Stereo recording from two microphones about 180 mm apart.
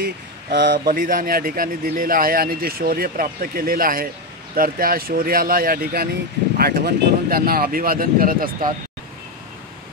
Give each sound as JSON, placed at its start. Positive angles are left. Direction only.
{"t": 0.0, "sound": "speech", "side_deg": -65}
{"t": 0.8, "sound": "speech", "side_deg": -50}